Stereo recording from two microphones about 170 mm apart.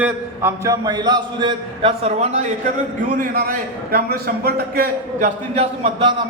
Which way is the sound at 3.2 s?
60° right (ahead or behind).